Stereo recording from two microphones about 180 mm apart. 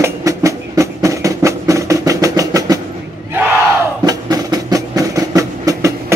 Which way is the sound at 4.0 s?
20° right (ahead or behind).